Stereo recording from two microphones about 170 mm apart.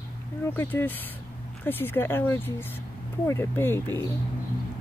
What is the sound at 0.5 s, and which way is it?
Speech, 10° left (ahead or behind).